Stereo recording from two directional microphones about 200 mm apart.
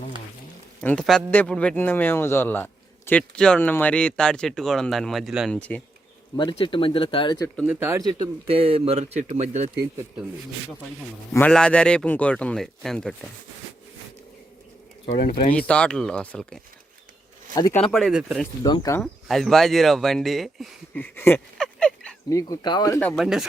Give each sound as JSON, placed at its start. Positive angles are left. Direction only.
{"t": 0.8, "sound": "speech", "side_deg": 5}
{"t": 6.3, "sound": "speech", "side_deg": 20}
{"t": 7.6, "sound": "speech", "side_deg": -10}
{"t": 11.3, "sound": "speech", "side_deg": 5}
{"t": 15.5, "sound": "speech", "side_deg": 5}
{"t": 17.5, "sound": "speech", "side_deg": 20}
{"t": 17.8, "sound": "speech", "side_deg": 0}
{"t": 18.6, "sound": "speech", "side_deg": 20}
{"t": 19.0, "sound": "speech", "side_deg": 0}
{"t": 22.3, "sound": "speech", "side_deg": 15}